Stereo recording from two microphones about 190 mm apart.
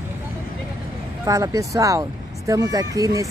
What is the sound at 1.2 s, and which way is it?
Speech, 20° right (ahead or behind).